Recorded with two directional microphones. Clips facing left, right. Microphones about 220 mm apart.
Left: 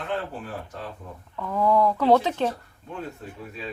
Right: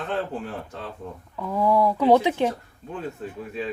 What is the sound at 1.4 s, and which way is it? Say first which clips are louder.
Speech: even; 10° right (ahead or behind).